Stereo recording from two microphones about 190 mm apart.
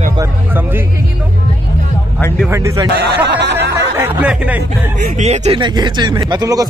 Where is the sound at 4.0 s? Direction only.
10° right (ahead or behind).